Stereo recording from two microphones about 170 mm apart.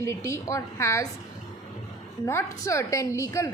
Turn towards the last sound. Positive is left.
turn(degrees=15)  # may be behind; listen again after turning